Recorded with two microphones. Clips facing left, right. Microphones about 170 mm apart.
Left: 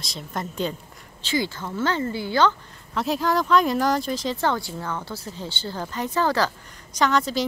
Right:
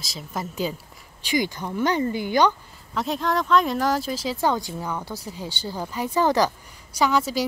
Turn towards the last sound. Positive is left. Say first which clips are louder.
# even
turn(degrees=-10)  # may be behind; listen again after turning